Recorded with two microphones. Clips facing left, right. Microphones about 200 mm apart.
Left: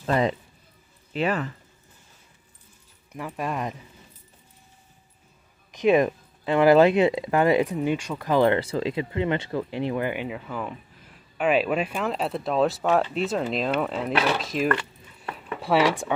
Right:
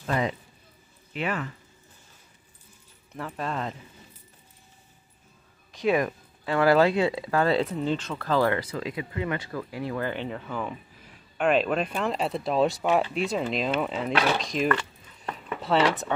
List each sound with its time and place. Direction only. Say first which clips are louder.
0.0 s speech: left 4 dB; 35° left (ahead or behind)
3.1 s speech: left 2 dB; 15° left (ahead or behind)
5.7 s speech: left 5 dB; 20° left (ahead or behind); by 14.9 s 5° left (ahead or behind)
15.3 s a sound: left 2 dB; 10° left (ahead or behind)